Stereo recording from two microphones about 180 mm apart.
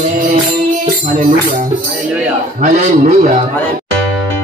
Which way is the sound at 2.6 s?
40° right (ahead or behind).